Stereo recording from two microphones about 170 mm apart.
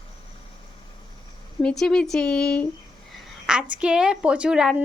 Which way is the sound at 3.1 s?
5° right (ahead or behind).